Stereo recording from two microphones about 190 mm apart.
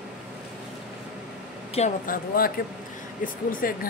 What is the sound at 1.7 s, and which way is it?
Speech, 40° left (ahead or behind).